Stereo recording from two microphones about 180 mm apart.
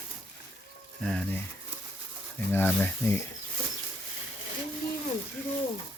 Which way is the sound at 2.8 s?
10° left (ahead or behind).